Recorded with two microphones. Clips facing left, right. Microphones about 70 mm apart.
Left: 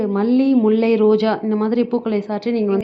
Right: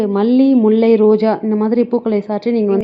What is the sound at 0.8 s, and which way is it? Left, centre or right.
A woman's voice, right.